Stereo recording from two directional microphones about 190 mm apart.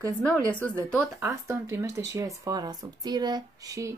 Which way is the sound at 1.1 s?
15° right (ahead or behind).